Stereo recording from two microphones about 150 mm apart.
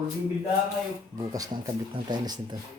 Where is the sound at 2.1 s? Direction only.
30° right (ahead or behind).